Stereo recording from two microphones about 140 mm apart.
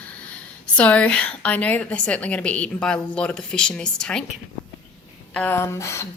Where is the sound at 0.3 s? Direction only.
10° left (ahead or behind).